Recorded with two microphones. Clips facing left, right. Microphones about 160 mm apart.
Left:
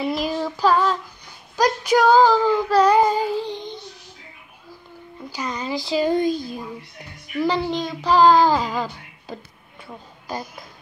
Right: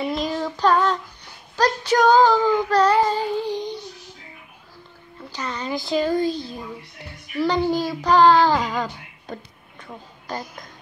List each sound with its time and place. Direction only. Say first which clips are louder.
0.0 s child singing: left 1 dB; 5° left (ahead or behind)
3.3 s child singing: right 2 dB; 10° right (ahead or behind)
5.3 s a sound: left 1 dB; 10° left (ahead or behind)
6.0 s speech: left 2 dB; 15° left (ahead or behind)
7.4 s child singing: right 2 dB; centre (ahead or behind)
9.8 s a woman's voice: even; 10° left (ahead or behind)